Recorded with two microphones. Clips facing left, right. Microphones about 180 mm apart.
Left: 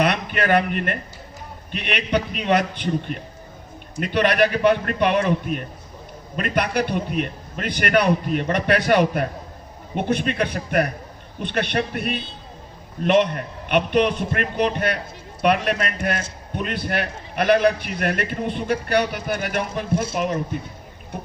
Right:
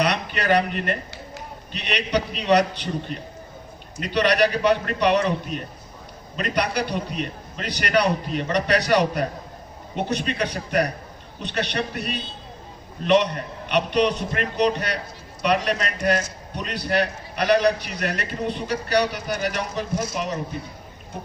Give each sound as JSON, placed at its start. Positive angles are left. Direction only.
{"t": 0.0, "sound": "a sound", "side_deg": 50}
{"t": 1.7, "sound": "a man's voice", "side_deg": 50}
{"t": 4.0, "sound": "a man's voice", "side_deg": 50}